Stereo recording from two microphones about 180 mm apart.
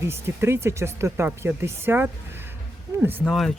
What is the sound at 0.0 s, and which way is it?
Speech, 15° right (ahead or behind).